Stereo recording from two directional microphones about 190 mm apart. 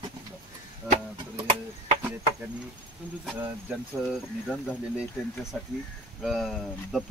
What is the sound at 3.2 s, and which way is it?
Speech, 5° right (ahead or behind).